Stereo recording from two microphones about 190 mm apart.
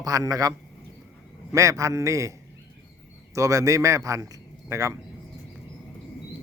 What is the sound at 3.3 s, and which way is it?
A man's voice, 15° right (ahead or behind).